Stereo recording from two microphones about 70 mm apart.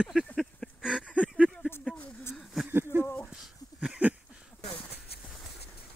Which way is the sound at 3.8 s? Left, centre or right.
Centre.